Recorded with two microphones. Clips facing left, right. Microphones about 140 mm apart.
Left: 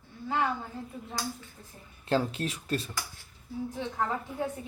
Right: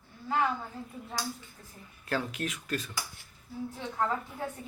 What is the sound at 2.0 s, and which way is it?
Speech, 30° left (ahead or behind).